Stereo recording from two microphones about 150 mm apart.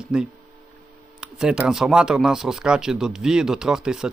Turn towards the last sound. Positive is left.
turn(degrees=-5)  # may be behind; listen again after turning